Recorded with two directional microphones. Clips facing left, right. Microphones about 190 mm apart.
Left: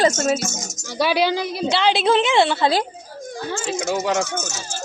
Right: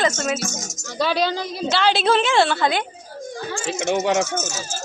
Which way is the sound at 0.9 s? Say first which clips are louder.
Left 2 dB; 10° left (ahead or behind).